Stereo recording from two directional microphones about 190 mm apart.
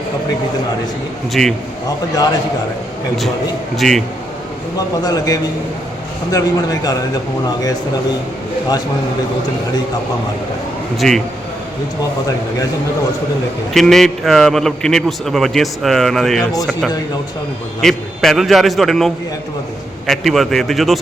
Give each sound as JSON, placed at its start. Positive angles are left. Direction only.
{"t": 1.3, "sound": "a man's voice", "side_deg": 0}
{"t": 3.8, "sound": "a man's voice", "side_deg": 0}
{"t": 5.0, "sound": "a man's voice", "side_deg": 20}
{"t": 10.9, "sound": "a man's voice", "side_deg": 0}
{"t": 13.7, "sound": "a man's voice", "side_deg": 0}
{"t": 17.7, "sound": "a man's voice", "side_deg": 0}